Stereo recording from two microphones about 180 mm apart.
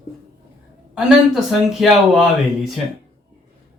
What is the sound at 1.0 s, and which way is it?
Speech, centre (ahead or behind).